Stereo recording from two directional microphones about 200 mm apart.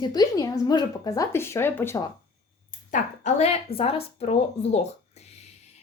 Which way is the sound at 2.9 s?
35° left (ahead or behind).